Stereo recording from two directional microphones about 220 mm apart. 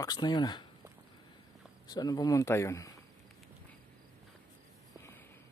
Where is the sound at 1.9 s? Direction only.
20° left (ahead or behind).